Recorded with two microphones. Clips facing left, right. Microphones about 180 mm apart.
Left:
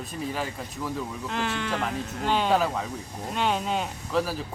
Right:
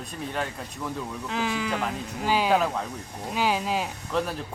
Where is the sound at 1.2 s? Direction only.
Centre (ahead or behind).